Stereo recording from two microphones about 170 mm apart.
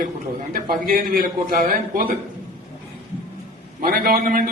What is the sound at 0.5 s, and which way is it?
A man's voice, 55° right (ahead or behind).